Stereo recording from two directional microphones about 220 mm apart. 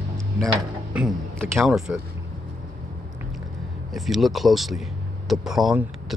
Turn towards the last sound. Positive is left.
turn(degrees=0)  # may be behind; listen again after turning